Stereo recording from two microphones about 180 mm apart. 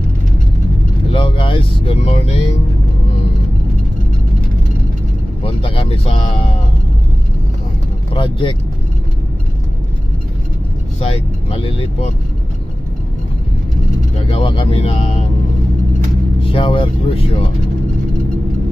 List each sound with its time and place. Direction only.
1.1 s speech: 30° left (ahead or behind)
5.4 s speech: 30° left (ahead or behind)
8.1 s speech: 30° left (ahead or behind)
11.0 s speech: 30° left (ahead or behind)
14.3 s speech: 30° left (ahead or behind)
16.4 s speech: 30° left (ahead or behind)